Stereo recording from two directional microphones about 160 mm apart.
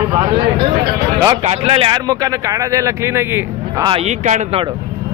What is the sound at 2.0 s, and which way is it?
Speech, 20° right (ahead or behind).